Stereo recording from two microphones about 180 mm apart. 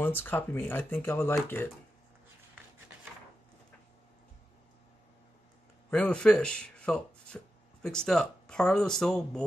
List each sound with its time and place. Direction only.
0.0 s speech: 10° left (ahead or behind)
5.9 s speech: 5° left (ahead or behind)